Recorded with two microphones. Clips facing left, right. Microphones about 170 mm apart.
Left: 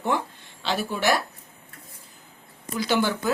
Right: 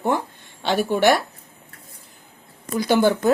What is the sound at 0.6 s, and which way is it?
Speech, 60° right (ahead or behind).